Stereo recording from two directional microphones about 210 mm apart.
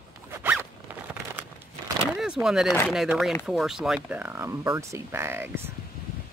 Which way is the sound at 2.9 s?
Centre (ahead or behind).